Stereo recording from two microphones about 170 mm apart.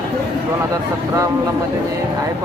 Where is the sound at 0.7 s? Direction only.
15° right (ahead or behind).